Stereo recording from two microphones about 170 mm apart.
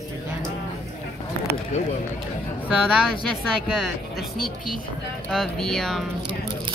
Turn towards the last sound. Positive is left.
turn(degrees=0)  # may be behind; listen again after turning